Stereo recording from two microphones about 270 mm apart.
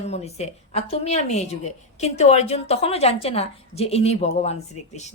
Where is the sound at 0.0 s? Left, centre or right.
Left.